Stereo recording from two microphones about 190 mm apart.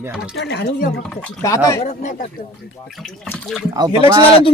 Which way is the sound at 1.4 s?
15° left (ahead or behind).